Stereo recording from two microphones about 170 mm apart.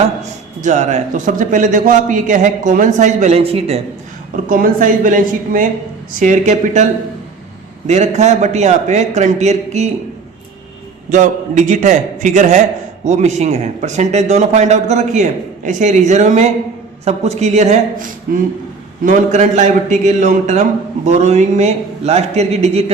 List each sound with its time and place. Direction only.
0.2 s a man's voice: 45° right (ahead or behind)
4.4 s a man's voice: 55° right (ahead or behind)
7.9 s a man's voice: 40° right (ahead or behind)
11.1 s a man's voice: 45° right (ahead or behind)